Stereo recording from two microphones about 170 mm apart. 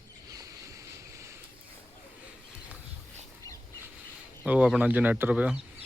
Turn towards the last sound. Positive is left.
turn(degrees=-5)  # may be behind; listen again after turning